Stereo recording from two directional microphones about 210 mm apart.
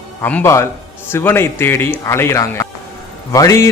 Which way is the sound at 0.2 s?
10° left (ahead or behind).